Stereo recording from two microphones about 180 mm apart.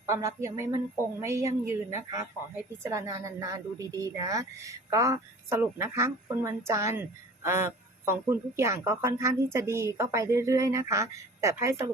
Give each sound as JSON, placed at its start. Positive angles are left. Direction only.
{"t": 0.0, "sound": "a woman's voice", "side_deg": -15}
{"t": 2.8, "sound": "a woman's voice", "side_deg": -15}